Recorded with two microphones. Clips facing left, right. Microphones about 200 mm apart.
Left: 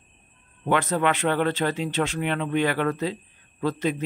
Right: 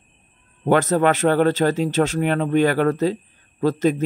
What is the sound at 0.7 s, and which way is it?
Speech, 40° right (ahead or behind).